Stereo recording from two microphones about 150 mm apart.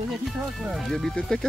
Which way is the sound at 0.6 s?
Centre (ahead or behind).